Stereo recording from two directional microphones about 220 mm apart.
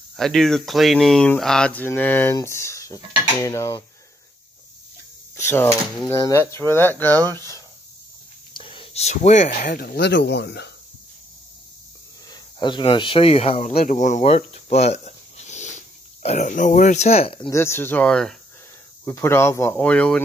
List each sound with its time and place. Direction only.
0.1 s speech: centre (ahead or behind)
5.3 s speech: 10° left (ahead or behind)
8.5 s speech: 25° left (ahead or behind); by 10.7 s 50° left (ahead or behind)
12.3 s speech: 20° left (ahead or behind)
17.6 s speech: 10° left (ahead or behind)